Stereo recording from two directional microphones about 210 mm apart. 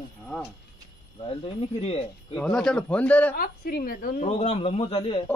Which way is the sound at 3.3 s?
45° left (ahead or behind).